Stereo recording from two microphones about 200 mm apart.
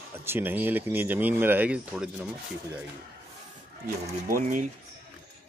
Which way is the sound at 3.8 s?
45° right (ahead or behind).